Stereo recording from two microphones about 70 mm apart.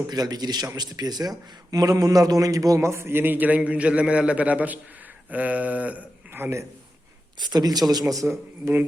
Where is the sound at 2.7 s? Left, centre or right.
Right.